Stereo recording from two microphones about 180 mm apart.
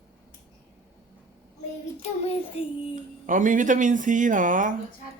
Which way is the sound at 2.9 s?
45° right (ahead or behind).